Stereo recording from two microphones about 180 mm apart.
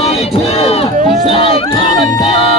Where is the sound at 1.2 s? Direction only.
30° left (ahead or behind).